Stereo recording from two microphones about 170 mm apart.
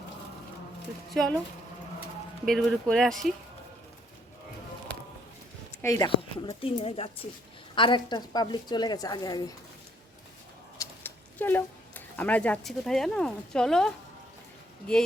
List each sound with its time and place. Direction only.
1.1 s speech: centre (ahead or behind)
2.4 s speech: centre (ahead or behind)
5.8 s a woman's voice: 20° left (ahead or behind)
10.8 s speech: 10° left (ahead or behind)